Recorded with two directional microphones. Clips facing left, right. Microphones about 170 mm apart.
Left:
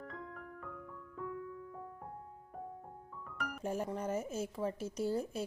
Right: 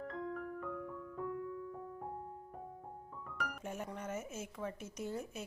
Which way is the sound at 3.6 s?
35° left (ahead or behind).